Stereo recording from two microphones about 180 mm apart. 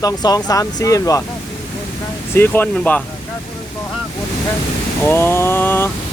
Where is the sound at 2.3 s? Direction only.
10° left (ahead or behind).